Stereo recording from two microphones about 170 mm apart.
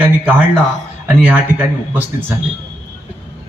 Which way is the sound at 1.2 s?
10° right (ahead or behind).